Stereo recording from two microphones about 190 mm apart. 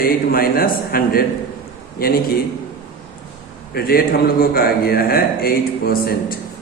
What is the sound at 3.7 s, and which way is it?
A man's voice, 55° left (ahead or behind).